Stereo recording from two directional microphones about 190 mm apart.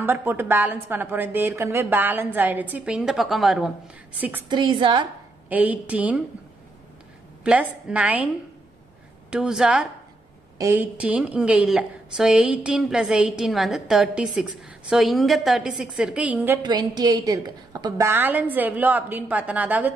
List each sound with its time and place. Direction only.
0.0 s a woman's voice: 10° right (ahead or behind)
4.5 s a woman's voice: 25° right (ahead or behind)
5.5 s a woman's voice: 10° right (ahead or behind)
7.4 s a woman's voice: 5° right (ahead or behind)
9.3 s a woman's voice: 5° right (ahead or behind)
16.6 s a woman's voice: 20° right (ahead or behind)